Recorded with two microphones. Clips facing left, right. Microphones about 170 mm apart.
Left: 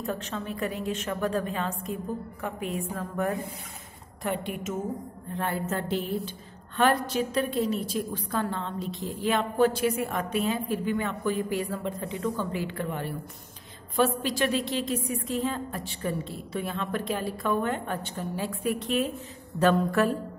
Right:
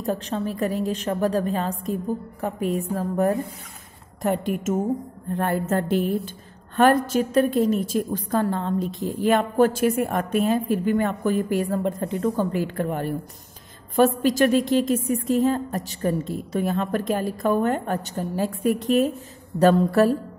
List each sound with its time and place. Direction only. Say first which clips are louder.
0.0 s a woman's voice: right 7 dB; 35° right (ahead or behind)